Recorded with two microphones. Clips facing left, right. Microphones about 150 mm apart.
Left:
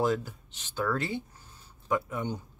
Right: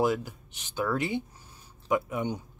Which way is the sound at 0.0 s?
10° right (ahead or behind).